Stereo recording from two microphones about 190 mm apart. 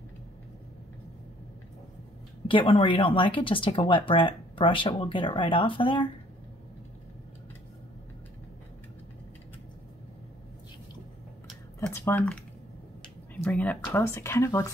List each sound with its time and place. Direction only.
2.4 s speech: 25° left (ahead or behind)
11.9 s speech: 10° left (ahead or behind)